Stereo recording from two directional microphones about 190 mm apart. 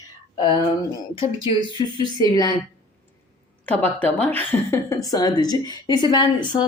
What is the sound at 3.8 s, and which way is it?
A woman's voice, 10° left (ahead or behind).